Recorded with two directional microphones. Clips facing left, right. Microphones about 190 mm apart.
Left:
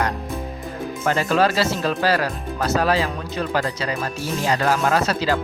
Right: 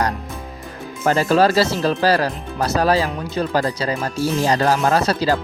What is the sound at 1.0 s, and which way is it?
Speech, 35° right (ahead or behind).